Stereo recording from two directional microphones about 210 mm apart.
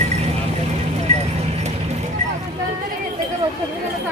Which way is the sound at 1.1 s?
30° right (ahead or behind).